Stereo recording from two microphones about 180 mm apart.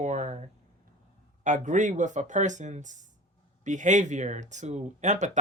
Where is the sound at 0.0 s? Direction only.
40° right (ahead or behind).